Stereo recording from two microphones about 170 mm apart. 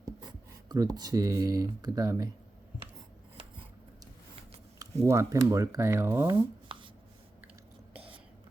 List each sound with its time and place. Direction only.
0.0 s speech: 25° right (ahead or behind)
5.0 s speech: 15° right (ahead or behind)
6.7 s writing: 30° right (ahead or behind)